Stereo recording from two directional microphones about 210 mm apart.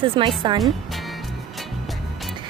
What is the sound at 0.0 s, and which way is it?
Speech, 25° right (ahead or behind).